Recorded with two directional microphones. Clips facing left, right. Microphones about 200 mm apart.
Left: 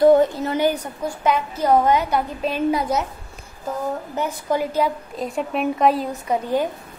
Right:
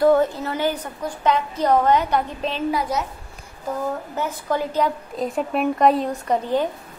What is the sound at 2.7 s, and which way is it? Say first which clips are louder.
Speech: left 2 dB; 20° left (ahead or behind).